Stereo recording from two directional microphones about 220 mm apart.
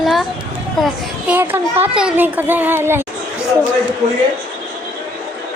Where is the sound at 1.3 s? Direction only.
10° right (ahead or behind).